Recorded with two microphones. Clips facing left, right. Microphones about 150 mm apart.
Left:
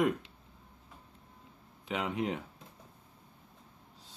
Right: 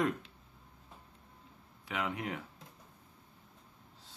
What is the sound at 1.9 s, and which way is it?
Speech, 20° left (ahead or behind).